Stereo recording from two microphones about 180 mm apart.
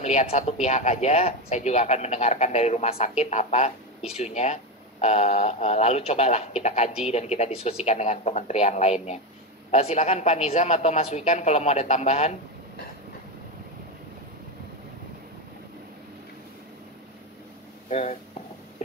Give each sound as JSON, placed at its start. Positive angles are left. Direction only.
{"t": 0.0, "sound": "speech", "side_deg": 35}
{"t": 17.8, "sound": "speech", "side_deg": 35}